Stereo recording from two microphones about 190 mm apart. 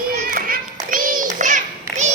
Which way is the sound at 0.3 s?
50° right (ahead or behind).